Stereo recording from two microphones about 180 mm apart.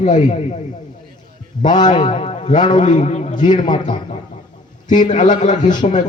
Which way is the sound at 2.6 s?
25° left (ahead or behind).